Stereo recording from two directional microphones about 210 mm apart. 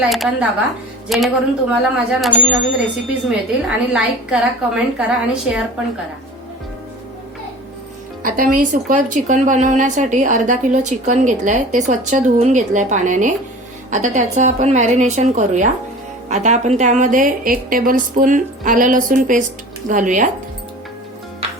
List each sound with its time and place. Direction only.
0.0 s a woman's voice: 5° right (ahead or behind)
8.2 s a woman's voice: 40° right (ahead or behind)
21.4 s music: 25° right (ahead or behind)